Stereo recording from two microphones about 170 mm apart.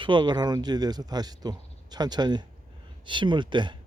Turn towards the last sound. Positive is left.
turn(degrees=-25)  # may be behind; listen again after turning